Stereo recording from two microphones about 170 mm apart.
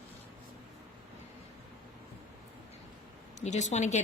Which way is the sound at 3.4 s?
45° left (ahead or behind).